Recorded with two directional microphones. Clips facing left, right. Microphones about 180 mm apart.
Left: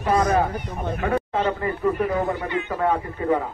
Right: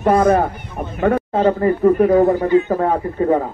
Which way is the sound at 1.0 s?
40° right (ahead or behind).